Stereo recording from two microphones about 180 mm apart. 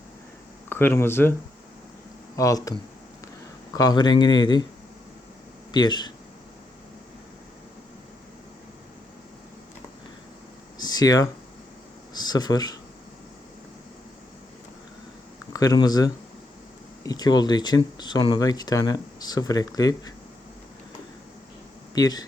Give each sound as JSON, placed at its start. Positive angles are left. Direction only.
{"t": 0.7, "sound": "speech", "side_deg": 10}
{"t": 3.8, "sound": "speech", "side_deg": 20}
{"t": 5.7, "sound": "speech", "side_deg": 25}
{"t": 10.8, "sound": "a sound", "side_deg": 20}
{"t": 12.1, "sound": "speech", "side_deg": 20}
{"t": 15.5, "sound": "speech", "side_deg": 20}
{"t": 21.9, "sound": "speech", "side_deg": 20}